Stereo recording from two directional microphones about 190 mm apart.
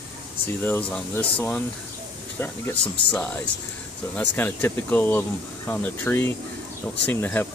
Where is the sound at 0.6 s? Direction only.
10° left (ahead or behind).